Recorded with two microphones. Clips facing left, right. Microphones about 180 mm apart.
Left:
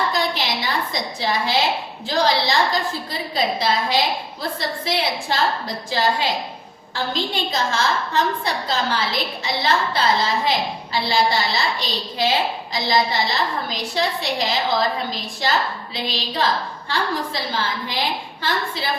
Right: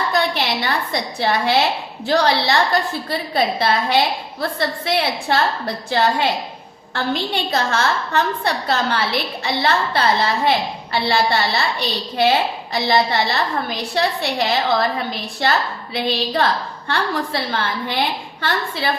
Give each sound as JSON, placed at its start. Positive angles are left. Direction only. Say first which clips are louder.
{"t": 0.1, "sound": "a woman's voice", "louder": "right 3 dB", "side_deg": -60}